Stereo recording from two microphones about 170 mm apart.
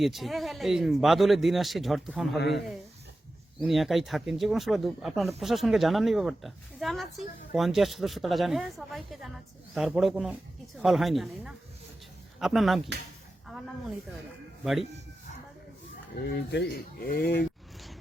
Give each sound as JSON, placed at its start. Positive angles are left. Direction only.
{"t": 0.0, "sound": "a man's voice", "side_deg": 0}
{"t": 2.4, "sound": "speech", "side_deg": 90}
{"t": 3.6, "sound": "a man's voice", "side_deg": 0}
{"t": 14.6, "sound": "speech", "side_deg": 0}
{"t": 16.1, "sound": "speech", "side_deg": 75}